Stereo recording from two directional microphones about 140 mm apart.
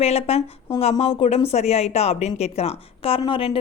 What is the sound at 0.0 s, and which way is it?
Speech, 45° left (ahead or behind).